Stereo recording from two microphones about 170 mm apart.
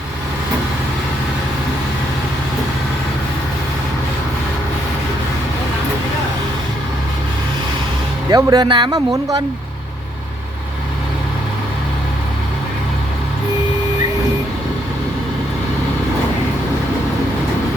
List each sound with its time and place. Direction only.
8.3 s speech: 20° right (ahead or behind)